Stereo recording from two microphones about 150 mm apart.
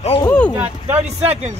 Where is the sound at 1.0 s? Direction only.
45° right (ahead or behind).